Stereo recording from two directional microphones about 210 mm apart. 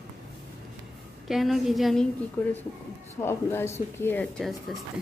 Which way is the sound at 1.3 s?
Centre (ahead or behind).